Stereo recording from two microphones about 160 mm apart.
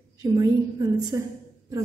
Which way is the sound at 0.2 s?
20° right (ahead or behind).